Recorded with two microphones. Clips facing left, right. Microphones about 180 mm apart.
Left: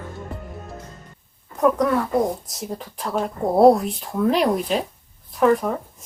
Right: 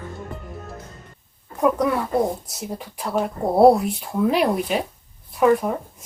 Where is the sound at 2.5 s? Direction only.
5° right (ahead or behind).